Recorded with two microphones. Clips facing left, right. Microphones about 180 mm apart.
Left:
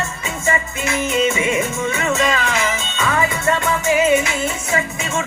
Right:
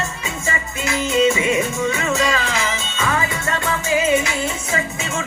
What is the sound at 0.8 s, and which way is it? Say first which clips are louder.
Music: right 2 dB; 20° left (ahead or behind).